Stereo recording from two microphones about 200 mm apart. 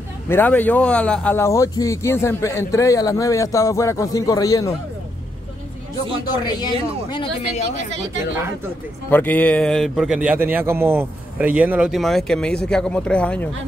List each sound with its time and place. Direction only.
0.3 s a man's voice: 10° left (ahead or behind)
6.4 s speech: 20° left (ahead or behind)
9.1 s a man's voice: 10° left (ahead or behind)